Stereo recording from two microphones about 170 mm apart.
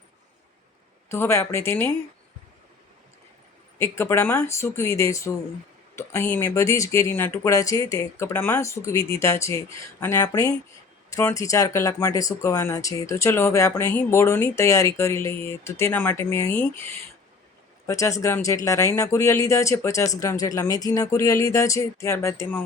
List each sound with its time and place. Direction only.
1.1 s speech: 15° left (ahead or behind)
3.9 s speech: 15° left (ahead or behind)